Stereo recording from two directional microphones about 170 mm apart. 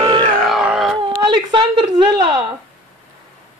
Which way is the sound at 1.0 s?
30° right (ahead or behind).